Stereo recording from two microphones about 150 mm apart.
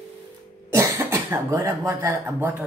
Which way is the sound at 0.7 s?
20° right (ahead or behind).